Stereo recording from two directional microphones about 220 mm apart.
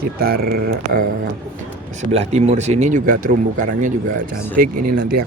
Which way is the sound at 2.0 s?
30° right (ahead or behind).